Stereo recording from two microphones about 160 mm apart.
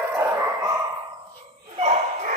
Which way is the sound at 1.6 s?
40° right (ahead or behind).